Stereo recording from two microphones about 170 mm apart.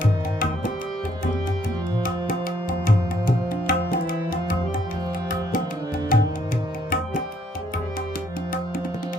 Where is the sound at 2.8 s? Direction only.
55° left (ahead or behind).